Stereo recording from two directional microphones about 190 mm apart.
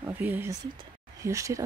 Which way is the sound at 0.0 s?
10° right (ahead or behind).